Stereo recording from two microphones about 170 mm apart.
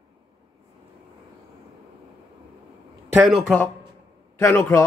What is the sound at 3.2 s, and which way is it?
Speech, centre (ahead or behind).